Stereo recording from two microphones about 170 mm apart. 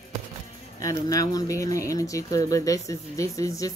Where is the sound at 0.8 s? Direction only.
20° left (ahead or behind).